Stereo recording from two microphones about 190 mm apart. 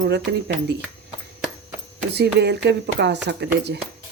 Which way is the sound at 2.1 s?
65° right (ahead or behind).